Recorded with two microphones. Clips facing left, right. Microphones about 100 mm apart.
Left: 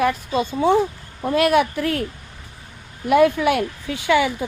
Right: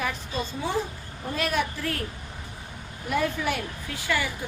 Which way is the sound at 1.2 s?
65° left (ahead or behind).